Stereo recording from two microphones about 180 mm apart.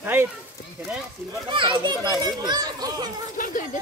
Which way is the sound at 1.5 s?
25° right (ahead or behind).